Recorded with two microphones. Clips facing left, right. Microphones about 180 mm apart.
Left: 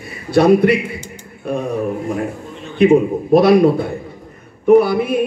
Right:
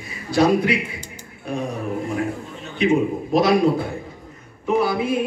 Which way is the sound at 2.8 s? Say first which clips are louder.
Left 7 dB; 60° left (ahead or behind).